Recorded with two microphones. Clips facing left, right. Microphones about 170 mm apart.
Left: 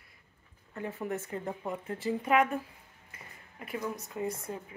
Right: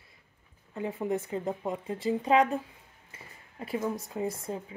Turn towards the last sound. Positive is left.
turn(degrees=-25)  # may be behind; listen again after turning